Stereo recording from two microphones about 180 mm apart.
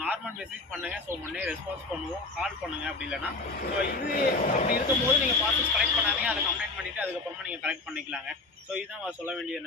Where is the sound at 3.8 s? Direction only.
60° left (ahead or behind).